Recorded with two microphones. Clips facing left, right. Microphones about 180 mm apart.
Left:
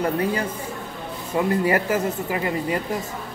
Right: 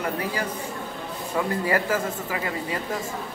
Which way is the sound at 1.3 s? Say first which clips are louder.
Left 4 dB; 20° left (ahead or behind).